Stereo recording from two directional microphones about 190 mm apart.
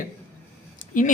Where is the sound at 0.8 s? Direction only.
45° left (ahead or behind).